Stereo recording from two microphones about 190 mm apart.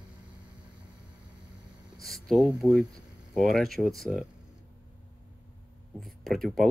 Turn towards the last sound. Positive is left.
turn(degrees=0)  # may be behind; listen again after turning